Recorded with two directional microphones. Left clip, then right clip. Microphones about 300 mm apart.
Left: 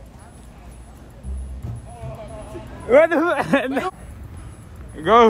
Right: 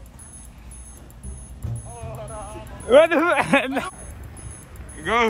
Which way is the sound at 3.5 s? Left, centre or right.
Right.